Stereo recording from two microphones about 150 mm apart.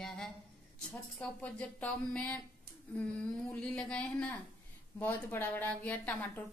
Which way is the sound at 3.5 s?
5° left (ahead or behind).